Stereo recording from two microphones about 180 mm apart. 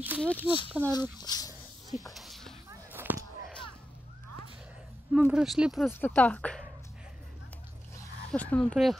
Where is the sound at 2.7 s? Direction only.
10° right (ahead or behind).